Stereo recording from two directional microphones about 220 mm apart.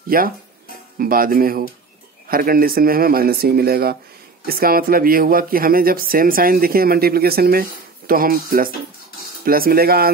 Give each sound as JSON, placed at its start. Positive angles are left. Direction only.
{"t": 0.1, "sound": "speech", "side_deg": -40}